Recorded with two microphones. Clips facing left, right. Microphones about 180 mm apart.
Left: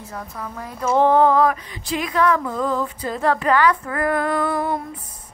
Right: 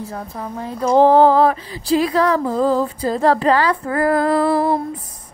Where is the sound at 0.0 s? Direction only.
30° right (ahead or behind).